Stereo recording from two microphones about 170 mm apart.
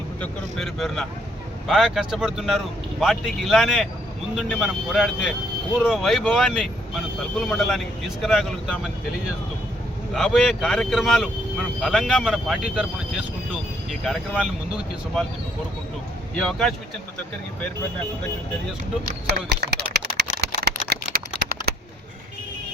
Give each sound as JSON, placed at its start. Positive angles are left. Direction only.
{"t": 0.2, "sound": "speech", "side_deg": 5}
{"t": 10.2, "sound": "speech", "side_deg": 0}
{"t": 16.4, "sound": "speech", "side_deg": 5}
{"t": 19.0, "sound": "a sound", "side_deg": -70}
{"t": 20.7, "sound": "typing", "side_deg": -70}